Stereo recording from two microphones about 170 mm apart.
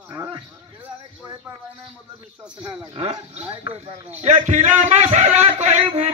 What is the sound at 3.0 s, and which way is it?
A man's voice, 35° right (ahead or behind).